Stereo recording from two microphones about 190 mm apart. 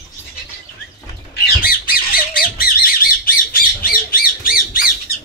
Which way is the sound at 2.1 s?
50° left (ahead or behind).